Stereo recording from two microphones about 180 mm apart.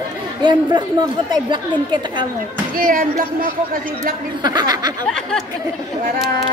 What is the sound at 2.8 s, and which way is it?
Speech, 50° right (ahead or behind).